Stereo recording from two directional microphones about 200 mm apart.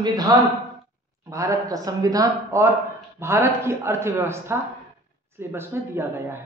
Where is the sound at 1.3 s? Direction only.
15° right (ahead or behind).